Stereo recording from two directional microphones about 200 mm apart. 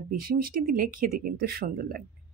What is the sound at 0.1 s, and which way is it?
Speech, 45° right (ahead or behind).